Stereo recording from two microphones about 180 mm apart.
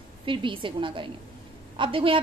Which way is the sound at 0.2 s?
30° right (ahead or behind).